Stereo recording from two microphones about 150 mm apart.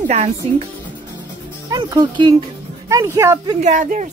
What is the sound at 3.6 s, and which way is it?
Speech, 55° right (ahead or behind).